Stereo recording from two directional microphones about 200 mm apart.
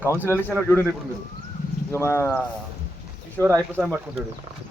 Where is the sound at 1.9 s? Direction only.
15° left (ahead or behind).